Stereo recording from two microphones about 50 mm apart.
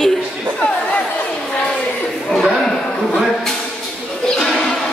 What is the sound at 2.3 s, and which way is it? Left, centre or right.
Speech, centre.